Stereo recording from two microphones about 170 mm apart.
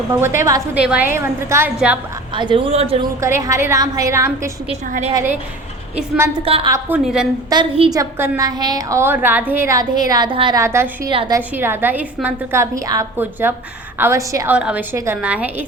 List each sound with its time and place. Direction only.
0.1 s a woman's voice: 15° right (ahead or behind)
0.8 s a woman's voice: 5° right (ahead or behind)
2.3 s speech: 30° right (ahead or behind)
3.2 s a woman's voice: 15° right (ahead or behind)
4.7 s speech: 40° right (ahead or behind)
5.1 s a woman's voice: 10° right (ahead or behind)
6.4 s speech: 35° right (ahead or behind)
6.7 s a woman's voice: 15° right (ahead or behind)
7.5 s a woman's voice: 25° right (ahead or behind)
10.6 s a woman's voice: 15° right (ahead or behind)
11.1 s speech: 30° right (ahead or behind)
11.3 s a woman's voice: 10° right (ahead or behind)